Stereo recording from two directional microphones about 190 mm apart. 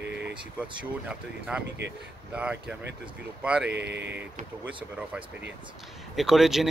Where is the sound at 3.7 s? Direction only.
65° right (ahead or behind).